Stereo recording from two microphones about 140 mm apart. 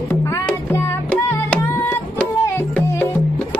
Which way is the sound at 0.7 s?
10° left (ahead or behind).